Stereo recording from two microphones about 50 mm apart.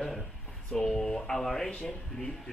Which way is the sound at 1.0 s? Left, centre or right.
Left.